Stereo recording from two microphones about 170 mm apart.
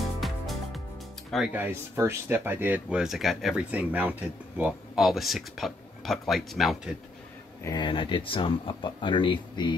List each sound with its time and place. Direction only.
1.3 s speech: 5° right (ahead or behind)
7.6 s speech: 25° left (ahead or behind)